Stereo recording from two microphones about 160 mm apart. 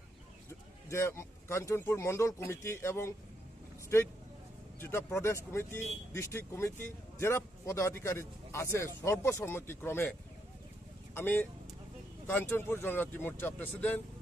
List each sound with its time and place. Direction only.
0.5 s a man's voice: 15° left (ahead or behind)
11.1 s a man's voice: 15° left (ahead or behind)